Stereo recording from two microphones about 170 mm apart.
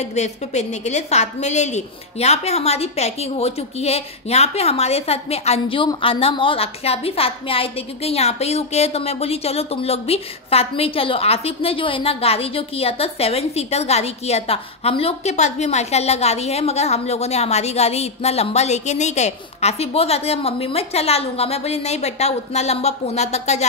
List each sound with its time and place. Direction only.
0.0 s a woman's voice: 40° left (ahead or behind)